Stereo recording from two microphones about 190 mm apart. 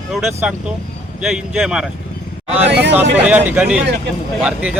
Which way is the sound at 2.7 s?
65° right (ahead or behind).